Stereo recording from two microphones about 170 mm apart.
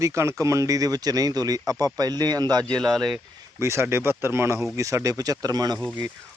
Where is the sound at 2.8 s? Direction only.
Centre (ahead or behind).